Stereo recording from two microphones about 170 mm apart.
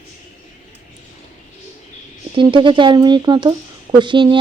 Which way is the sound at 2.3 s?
30° right (ahead or behind).